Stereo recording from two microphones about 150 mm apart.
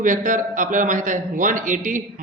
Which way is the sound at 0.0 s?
60° right (ahead or behind).